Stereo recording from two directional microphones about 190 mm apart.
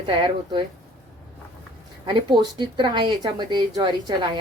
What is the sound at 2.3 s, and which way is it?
Speech, 25° right (ahead or behind).